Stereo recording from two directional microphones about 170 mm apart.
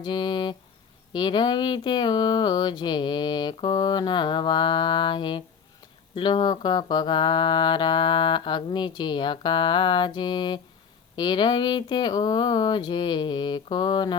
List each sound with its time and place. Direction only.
0.0 s speech: 25° left (ahead or behind)